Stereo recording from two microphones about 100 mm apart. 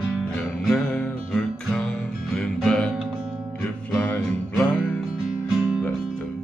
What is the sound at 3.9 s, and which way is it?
Music, 15° left (ahead or behind).